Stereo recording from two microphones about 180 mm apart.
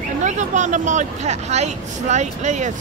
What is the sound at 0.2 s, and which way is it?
Speech, 40° right (ahead or behind).